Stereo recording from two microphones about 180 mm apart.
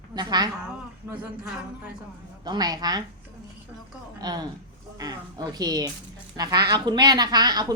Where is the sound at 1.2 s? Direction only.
5° right (ahead or behind).